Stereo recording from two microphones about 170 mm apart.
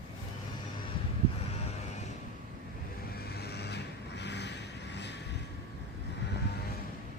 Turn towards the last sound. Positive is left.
turn(degrees=90)